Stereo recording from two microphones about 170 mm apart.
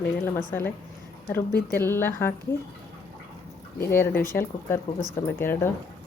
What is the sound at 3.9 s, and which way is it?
Speech, 10° left (ahead or behind).